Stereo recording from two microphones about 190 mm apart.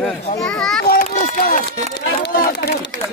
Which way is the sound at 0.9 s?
50° left (ahead or behind).